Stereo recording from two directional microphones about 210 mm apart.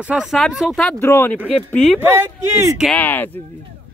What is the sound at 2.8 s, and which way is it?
Speech, 5° left (ahead or behind).